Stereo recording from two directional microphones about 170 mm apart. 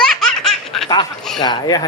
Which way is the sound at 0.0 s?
Centre (ahead or behind).